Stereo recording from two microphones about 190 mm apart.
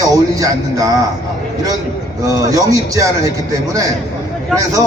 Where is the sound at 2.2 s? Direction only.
15° right (ahead or behind).